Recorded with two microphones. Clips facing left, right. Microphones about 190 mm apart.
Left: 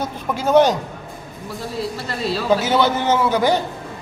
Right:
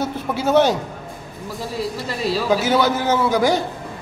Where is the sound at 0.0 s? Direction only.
5° right (ahead or behind).